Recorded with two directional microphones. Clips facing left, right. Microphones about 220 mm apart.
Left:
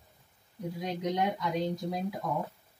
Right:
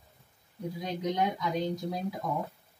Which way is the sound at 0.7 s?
Centre (ahead or behind).